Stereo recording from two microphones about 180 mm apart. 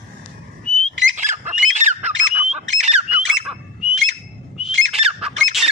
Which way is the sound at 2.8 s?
5° right (ahead or behind).